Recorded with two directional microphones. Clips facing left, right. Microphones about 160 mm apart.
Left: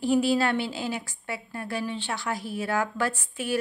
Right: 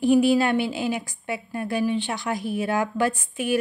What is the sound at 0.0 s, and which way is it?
A woman's voice, 15° right (ahead or behind).